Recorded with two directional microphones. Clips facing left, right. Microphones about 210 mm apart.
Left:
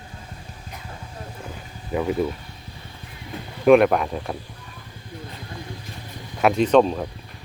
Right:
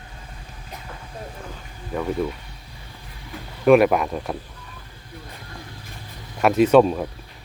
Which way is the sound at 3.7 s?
Centre (ahead or behind).